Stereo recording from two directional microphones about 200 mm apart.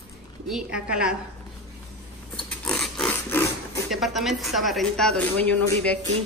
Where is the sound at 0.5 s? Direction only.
5° right (ahead or behind).